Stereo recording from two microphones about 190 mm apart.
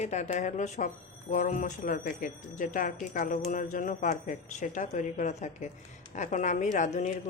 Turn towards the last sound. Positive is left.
turn(degrees=40)  # may be behind; listen again after turning